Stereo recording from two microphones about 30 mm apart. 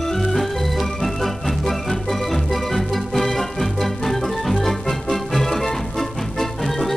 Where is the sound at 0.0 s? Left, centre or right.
Centre.